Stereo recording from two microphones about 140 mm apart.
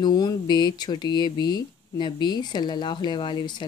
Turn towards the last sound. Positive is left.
turn(degrees=30)  # may be behind; listen again after turning